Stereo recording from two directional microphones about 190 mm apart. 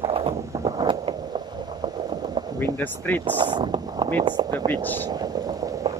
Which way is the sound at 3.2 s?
25° right (ahead or behind).